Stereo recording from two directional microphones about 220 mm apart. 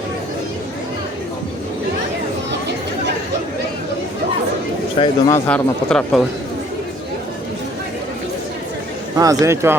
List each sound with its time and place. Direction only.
5.0 s speech: 25° left (ahead or behind)
5.3 s speech: 5° left (ahead or behind)
9.1 s speech: 15° right (ahead or behind)